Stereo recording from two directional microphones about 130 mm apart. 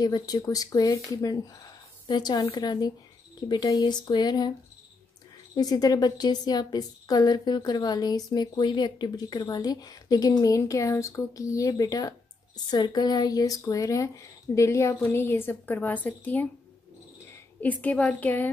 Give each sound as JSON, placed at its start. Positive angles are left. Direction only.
{"t": 0.0, "sound": "a woman's voice", "side_deg": 30}
{"t": 5.6, "sound": "a woman's voice", "side_deg": 30}
{"t": 17.6, "sound": "a woman's voice", "side_deg": 10}